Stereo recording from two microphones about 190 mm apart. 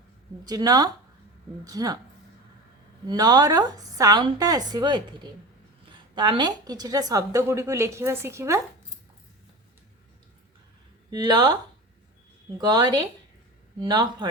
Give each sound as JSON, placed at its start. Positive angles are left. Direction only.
{"t": 0.4, "sound": "a woman's voice", "side_deg": -20}
{"t": 3.1, "sound": "a woman's voice", "side_deg": -20}
{"t": 11.1, "sound": "a woman's voice", "side_deg": -20}
{"t": 12.5, "sound": "a woman's voice", "side_deg": -20}